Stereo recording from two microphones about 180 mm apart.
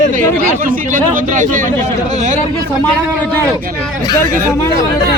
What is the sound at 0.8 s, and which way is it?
Speech, 45° right (ahead or behind).